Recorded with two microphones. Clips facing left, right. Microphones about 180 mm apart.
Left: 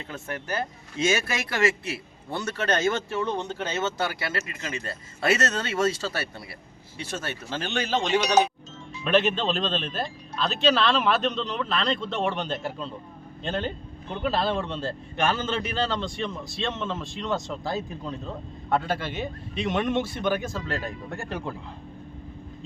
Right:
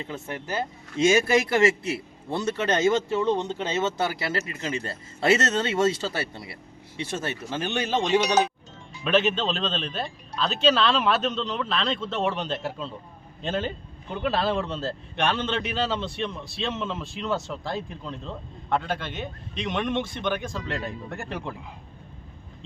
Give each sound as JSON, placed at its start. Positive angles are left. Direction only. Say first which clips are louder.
{"t": 1.5, "sound": "speech", "louder": "right 4 dB", "side_deg": -25}
{"t": 9.0, "sound": "a man's voice", "louder": "even", "side_deg": 0}